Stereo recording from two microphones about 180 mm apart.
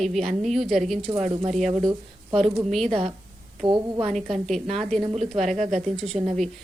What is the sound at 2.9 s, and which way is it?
Speech, 30° right (ahead or behind).